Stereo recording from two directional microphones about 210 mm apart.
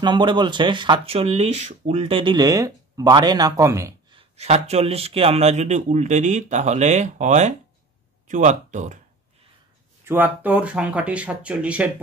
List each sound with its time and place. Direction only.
0.0 s speech: 20° right (ahead or behind)
4.2 s a man's voice: 30° right (ahead or behind)
10.0 s speech: 10° right (ahead or behind)